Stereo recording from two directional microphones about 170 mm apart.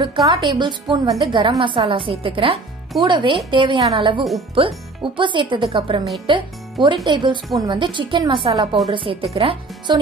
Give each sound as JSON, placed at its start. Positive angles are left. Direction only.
{"t": 0.0, "sound": "a woman's voice", "side_deg": -25}
{"t": 4.2, "sound": "speech", "side_deg": 0}
{"t": 4.6, "sound": "a woman's voice", "side_deg": -30}